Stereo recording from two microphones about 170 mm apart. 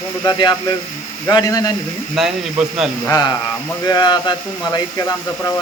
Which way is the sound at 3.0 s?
20° left (ahead or behind).